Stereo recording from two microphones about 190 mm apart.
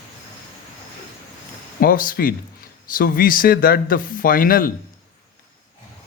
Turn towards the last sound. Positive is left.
turn(degrees=50)  # may be behind; listen again after turning